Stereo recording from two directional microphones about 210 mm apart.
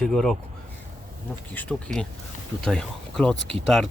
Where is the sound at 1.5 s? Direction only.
5° left (ahead or behind).